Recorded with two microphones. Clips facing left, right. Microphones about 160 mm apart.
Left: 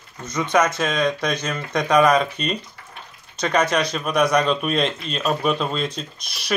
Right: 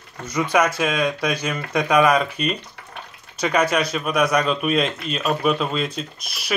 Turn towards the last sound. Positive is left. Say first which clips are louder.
# left 1 dB
turn(degrees=-5)  # may be behind; listen again after turning